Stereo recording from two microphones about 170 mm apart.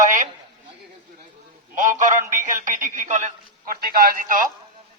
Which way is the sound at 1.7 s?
50° right (ahead or behind).